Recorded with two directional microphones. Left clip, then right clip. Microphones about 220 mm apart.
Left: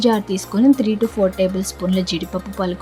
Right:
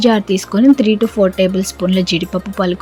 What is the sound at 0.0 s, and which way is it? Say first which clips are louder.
Speech: right 4 dB; 15° right (ahead or behind).